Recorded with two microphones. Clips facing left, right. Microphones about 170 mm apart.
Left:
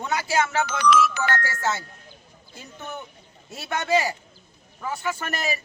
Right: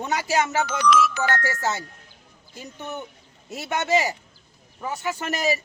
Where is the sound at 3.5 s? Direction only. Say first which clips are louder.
Right 1 dB; 20° right (ahead or behind).